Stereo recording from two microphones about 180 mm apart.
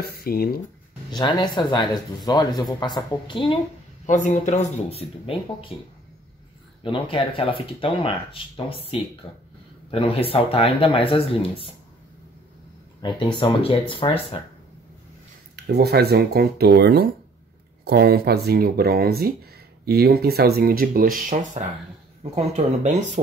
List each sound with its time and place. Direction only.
0.0 s speech: 60° left (ahead or behind)
1.1 s speech: 25° left (ahead or behind)
4.0 s speech: 40° left (ahead or behind)
6.8 s speech: 30° left (ahead or behind)
13.0 s speech: 25° left (ahead or behind)
15.5 s speech: 65° right (ahead or behind)